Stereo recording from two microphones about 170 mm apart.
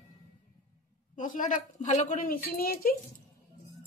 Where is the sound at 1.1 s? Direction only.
50° left (ahead or behind).